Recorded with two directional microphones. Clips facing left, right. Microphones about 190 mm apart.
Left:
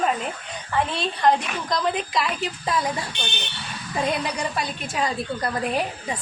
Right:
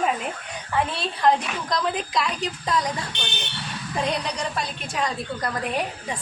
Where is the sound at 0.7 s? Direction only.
5° right (ahead or behind).